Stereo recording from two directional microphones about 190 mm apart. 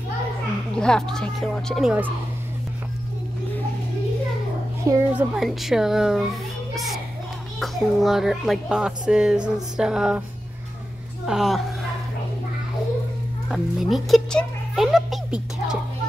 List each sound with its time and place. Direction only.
0.7 s speech: 5° left (ahead or behind)
4.8 s a child's voice: 15° right (ahead or behind)
5.3 s speech: centre (ahead or behind)
6.7 s children playing: centre (ahead or behind)
7.6 s speech: centre (ahead or behind)
11.2 s speech: centre (ahead or behind)
13.5 s music: centre (ahead or behind)